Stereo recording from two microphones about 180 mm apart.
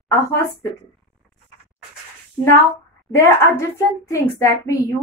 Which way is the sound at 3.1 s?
15° left (ahead or behind).